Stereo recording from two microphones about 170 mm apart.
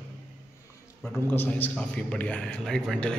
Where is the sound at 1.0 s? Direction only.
5° left (ahead or behind).